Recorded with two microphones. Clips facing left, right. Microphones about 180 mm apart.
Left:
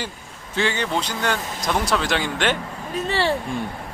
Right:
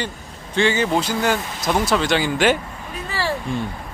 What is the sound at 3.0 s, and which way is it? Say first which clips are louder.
Speech: left 3 dB; 25° left (ahead or behind).